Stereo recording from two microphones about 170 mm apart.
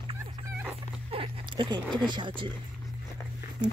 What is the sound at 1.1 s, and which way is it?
Speech, 30° right (ahead or behind).